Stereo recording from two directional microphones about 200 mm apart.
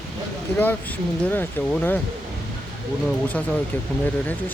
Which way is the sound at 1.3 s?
10° left (ahead or behind).